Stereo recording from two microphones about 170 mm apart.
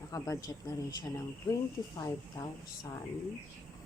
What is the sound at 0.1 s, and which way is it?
Speech, 20° left (ahead or behind).